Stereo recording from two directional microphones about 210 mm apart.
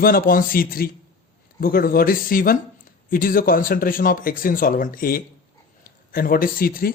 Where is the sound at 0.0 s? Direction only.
45° left (ahead or behind).